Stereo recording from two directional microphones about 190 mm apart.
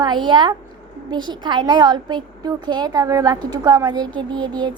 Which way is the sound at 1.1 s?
25° right (ahead or behind).